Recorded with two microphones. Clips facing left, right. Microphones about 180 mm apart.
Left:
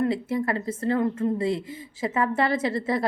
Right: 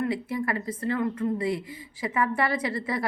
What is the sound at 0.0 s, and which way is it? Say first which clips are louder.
A woman's voice: left 3 dB; 25° left (ahead or behind).